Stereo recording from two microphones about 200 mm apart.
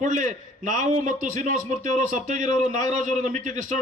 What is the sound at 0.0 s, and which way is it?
A man's voice, 40° right (ahead or behind).